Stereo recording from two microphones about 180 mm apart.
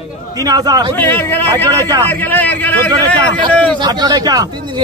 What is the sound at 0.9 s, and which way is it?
A man's voice, 10° left (ahead or behind).